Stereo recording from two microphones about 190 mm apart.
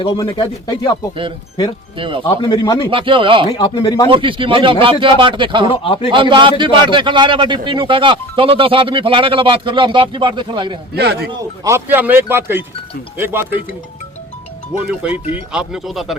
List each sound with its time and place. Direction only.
0.0 s speech: 25° left (ahead or behind)
2.0 s a man's voice: 25° right (ahead or behind)
2.2 s speech: 25° left (ahead or behind)
2.9 s a man's voice: 25° right (ahead or behind)
3.6 s speech: 20° left (ahead or behind)
4.1 s a man's voice: 25° right (ahead or behind)
5.7 s speech: 30° left (ahead or behind)
6.1 s a man's voice: 25° right (ahead or behind)
10.9 s speech: 55° right (ahead or behind)
11.6 s speech: 15° right (ahead or behind)
14.7 s speech: 5° right (ahead or behind)
15.1 s speech: 30° left (ahead or behind)
15.5 s speech: centre (ahead or behind)